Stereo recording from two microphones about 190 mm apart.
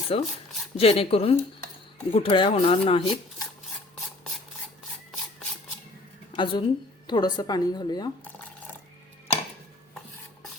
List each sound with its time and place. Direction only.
0.1 s a woman's voice: 30° left (ahead or behind)
6.3 s a woman's voice: 25° left (ahead or behind)